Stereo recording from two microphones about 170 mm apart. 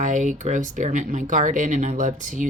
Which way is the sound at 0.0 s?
45° right (ahead or behind).